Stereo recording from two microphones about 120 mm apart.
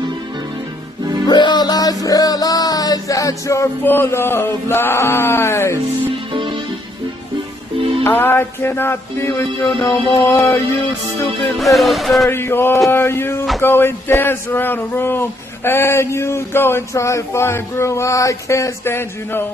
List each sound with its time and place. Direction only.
1.2 s music: 35° left (ahead or behind); by 5.8 s 20° left (ahead or behind)
6.3 s music: 45° right (ahead or behind)
8.0 s a man's voice: 20° left (ahead or behind)
11.5 s music: centre (ahead or behind)
12.3 s a man's voice: 20° left (ahead or behind)